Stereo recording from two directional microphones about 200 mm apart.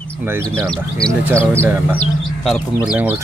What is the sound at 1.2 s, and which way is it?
Speech, 10° right (ahead or behind).